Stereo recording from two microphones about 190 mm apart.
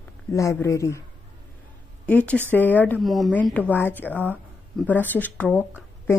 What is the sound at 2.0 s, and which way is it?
A woman's voice, 5° left (ahead or behind).